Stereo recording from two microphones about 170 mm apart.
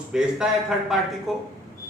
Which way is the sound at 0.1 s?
5° right (ahead or behind).